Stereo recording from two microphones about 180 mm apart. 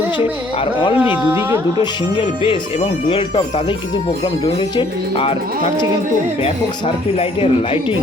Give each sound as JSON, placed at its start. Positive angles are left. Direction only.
{"t": 0.6, "sound": "speech", "side_deg": 30}
{"t": 0.9, "sound": "speech", "side_deg": -10}
{"t": 1.8, "sound": "speech", "side_deg": 30}
{"t": 4.8, "sound": "speech", "side_deg": 30}